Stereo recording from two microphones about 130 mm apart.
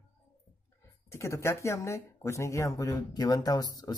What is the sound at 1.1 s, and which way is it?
Speech, 20° left (ahead or behind).